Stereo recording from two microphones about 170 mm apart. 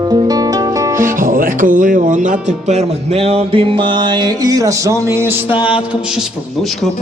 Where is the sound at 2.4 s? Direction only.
40° right (ahead or behind); by 5.6 s 10° right (ahead or behind).